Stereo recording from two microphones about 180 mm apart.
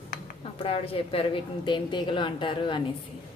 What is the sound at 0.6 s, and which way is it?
A woman's voice, 30° left (ahead or behind).